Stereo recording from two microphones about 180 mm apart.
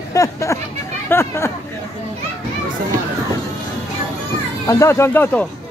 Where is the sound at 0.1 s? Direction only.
15° left (ahead or behind).